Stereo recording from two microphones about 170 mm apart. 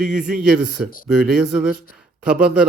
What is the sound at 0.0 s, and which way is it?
Speech, 5° right (ahead or behind).